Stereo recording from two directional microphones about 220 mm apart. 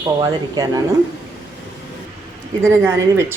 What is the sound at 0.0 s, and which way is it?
Speech, 15° right (ahead or behind).